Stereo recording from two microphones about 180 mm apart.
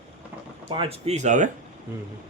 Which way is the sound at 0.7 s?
30° right (ahead or behind).